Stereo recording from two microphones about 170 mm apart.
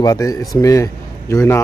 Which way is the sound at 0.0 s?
20° left (ahead or behind).